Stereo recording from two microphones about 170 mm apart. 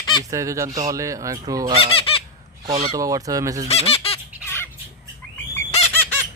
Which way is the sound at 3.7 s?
35° left (ahead or behind).